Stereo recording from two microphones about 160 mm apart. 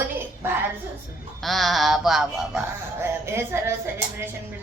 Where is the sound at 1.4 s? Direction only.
Centre (ahead or behind).